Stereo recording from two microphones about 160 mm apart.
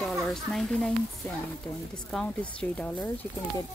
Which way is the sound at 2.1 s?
5° left (ahead or behind).